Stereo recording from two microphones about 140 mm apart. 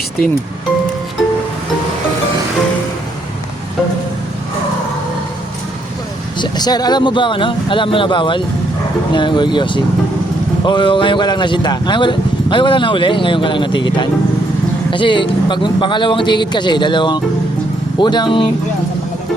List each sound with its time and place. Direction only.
6.4 s speech: 30° left (ahead or behind)